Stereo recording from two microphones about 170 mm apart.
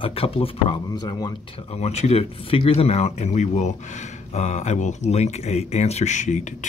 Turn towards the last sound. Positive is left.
turn(degrees=45)  # may be behind; listen again after turning